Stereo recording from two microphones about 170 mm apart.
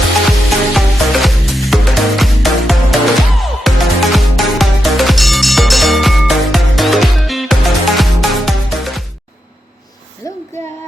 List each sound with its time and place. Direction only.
0.7 s music: centre (ahead or behind)
10.2 s music: 20° left (ahead or behind)